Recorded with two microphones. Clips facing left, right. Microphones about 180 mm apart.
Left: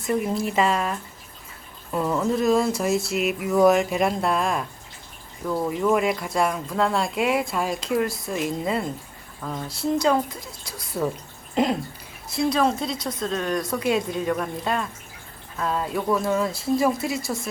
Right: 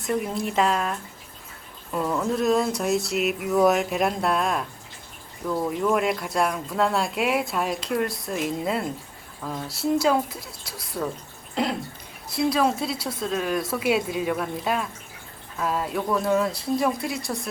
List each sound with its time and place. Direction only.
0.0 s speech: centre (ahead or behind)
12.3 s speech: centre (ahead or behind)